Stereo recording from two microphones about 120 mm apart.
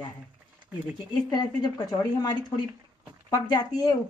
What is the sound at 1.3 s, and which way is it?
A woman's voice, 35° left (ahead or behind).